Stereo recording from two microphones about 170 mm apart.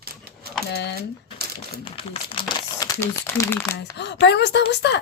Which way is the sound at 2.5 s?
20° left (ahead or behind).